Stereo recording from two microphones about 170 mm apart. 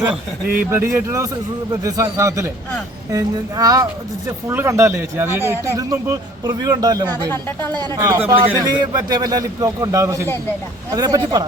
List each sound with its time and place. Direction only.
0.5 s a man's voice: 15° right (ahead or behind)